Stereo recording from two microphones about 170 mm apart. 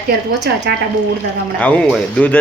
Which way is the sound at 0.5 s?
75° right (ahead or behind).